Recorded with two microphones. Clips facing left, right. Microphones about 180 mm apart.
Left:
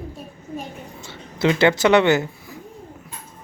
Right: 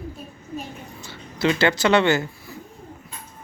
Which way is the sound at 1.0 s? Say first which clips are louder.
Left 2 dB; 25° left (ahead or behind).